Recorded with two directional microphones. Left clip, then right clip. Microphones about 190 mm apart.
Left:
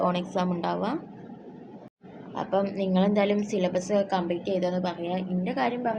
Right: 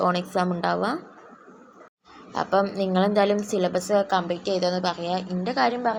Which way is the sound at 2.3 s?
25° right (ahead or behind).